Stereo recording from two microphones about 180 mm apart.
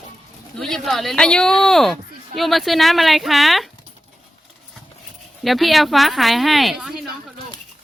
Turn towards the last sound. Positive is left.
turn(degrees=-5)  # may be behind; listen again after turning